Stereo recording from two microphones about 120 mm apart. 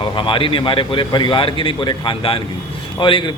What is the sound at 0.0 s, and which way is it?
A man's voice, 45° left (ahead or behind).